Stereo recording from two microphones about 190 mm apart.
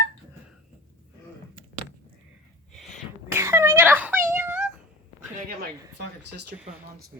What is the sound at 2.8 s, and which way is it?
Sneeze, centre (ahead or behind).